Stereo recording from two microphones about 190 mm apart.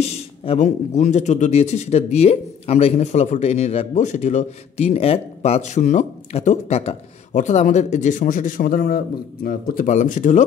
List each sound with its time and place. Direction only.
0.0 s speech: 35° left (ahead or behind)